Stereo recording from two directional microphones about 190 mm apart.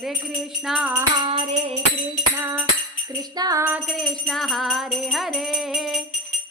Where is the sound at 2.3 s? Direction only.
10° right (ahead or behind).